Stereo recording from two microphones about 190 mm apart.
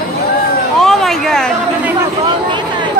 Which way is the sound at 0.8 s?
Centre (ahead or behind).